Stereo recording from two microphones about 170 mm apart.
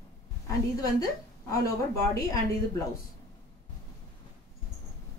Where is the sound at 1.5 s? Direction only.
20° left (ahead or behind).